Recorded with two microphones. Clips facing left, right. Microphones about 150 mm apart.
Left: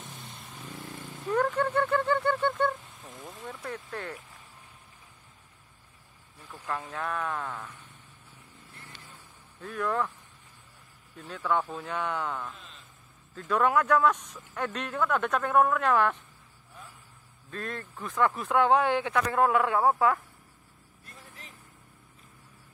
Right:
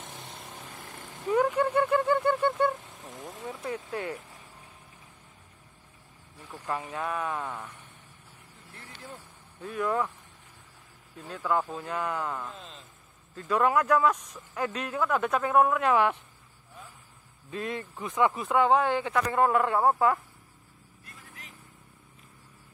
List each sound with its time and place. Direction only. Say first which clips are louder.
1.2 s a sound: right 2 dB; 10° right (ahead or behind)
3.0 s vehicle: right 2 dB; 40° right (ahead or behind)
3.4 s speech: right 4 dB; 10° right (ahead or behind)
6.9 s speech: even; 10° right (ahead or behind)
9.6 s speech: right 1 dB; 5° right (ahead or behind)
11.1 s speech: even; centre (ahead or behind)
17.5 s speech: right 3 dB; 10° right (ahead or behind)